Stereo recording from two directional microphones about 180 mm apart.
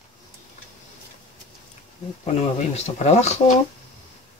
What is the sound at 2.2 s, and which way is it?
Speech, 35° left (ahead or behind).